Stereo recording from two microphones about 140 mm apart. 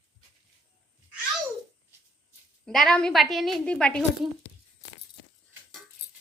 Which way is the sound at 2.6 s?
5° left (ahead or behind).